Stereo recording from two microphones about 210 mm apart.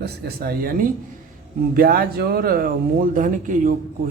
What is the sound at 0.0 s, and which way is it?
Speech, 45° right (ahead or behind).